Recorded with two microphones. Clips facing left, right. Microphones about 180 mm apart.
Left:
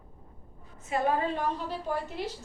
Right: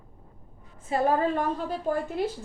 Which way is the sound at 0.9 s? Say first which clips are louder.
Right 4 dB; 40° right (ahead or behind).